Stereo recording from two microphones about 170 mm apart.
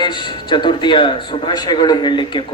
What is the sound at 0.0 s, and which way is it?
A man's voice, 25° left (ahead or behind).